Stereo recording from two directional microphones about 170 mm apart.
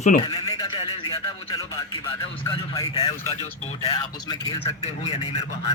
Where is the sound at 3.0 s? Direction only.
35° left (ahead or behind).